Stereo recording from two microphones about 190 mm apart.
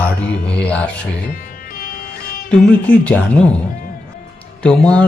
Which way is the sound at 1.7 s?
50° left (ahead or behind).